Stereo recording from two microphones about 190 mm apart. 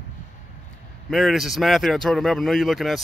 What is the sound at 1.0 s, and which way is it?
Speech, centre (ahead or behind).